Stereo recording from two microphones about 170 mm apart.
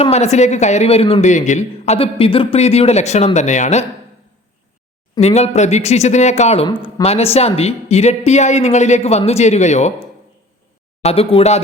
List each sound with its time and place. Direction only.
0.0 s speech: 40° left (ahead or behind)
5.2 s speech: 40° left (ahead or behind)